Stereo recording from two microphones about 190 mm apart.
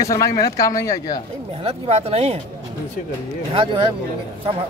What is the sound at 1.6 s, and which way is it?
Speech, 30° right (ahead or behind).